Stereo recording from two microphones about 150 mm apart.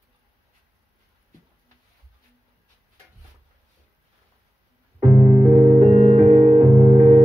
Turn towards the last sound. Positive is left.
turn(degrees=-50)  # may be behind; listen again after turning